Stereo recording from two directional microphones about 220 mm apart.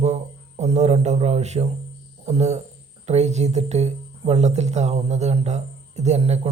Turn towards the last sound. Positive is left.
turn(degrees=-30)  # may be behind; listen again after turning